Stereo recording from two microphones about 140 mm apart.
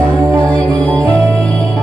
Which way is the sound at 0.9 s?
20° right (ahead or behind).